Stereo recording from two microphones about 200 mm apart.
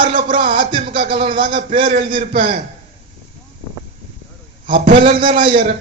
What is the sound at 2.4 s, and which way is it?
Speech, 30° right (ahead or behind).